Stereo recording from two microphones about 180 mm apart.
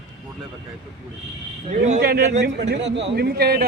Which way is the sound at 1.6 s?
40° right (ahead or behind).